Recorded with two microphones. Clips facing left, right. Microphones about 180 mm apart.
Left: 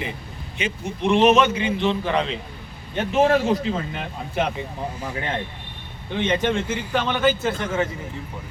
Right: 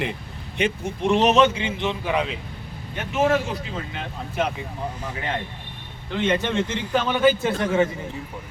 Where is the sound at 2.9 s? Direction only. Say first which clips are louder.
Left 3 dB; 35° left (ahead or behind).